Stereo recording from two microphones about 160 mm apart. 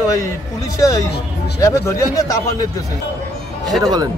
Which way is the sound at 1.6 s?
20° left (ahead or behind).